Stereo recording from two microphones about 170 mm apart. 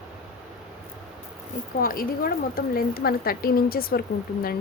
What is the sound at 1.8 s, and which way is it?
A woman's voice, 55° left (ahead or behind).